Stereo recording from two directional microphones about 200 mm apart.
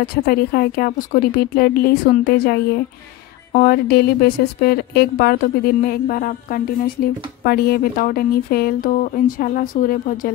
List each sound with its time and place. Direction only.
0.0 s a woman's voice: 50° left (ahead or behind)